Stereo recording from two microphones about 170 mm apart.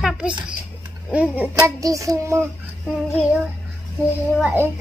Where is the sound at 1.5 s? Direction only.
20° right (ahead or behind).